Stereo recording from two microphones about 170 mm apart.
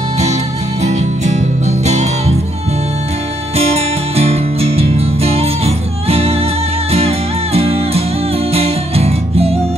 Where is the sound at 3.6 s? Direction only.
35° right (ahead or behind).